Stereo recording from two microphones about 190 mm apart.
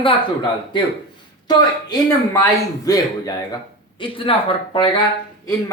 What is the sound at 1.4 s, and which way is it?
Speech, 20° left (ahead or behind).